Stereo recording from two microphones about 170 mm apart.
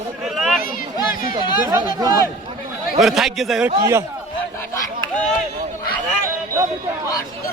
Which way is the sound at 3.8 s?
15° right (ahead or behind).